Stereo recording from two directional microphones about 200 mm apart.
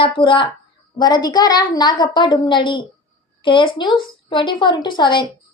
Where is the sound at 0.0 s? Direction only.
25° left (ahead or behind).